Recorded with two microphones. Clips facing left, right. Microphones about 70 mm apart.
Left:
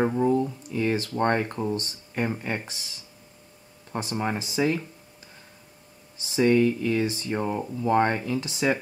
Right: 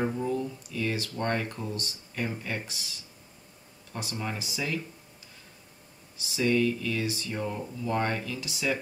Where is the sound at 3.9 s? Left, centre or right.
Left.